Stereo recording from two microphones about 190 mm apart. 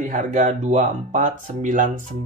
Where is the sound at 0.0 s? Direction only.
40° right (ahead or behind).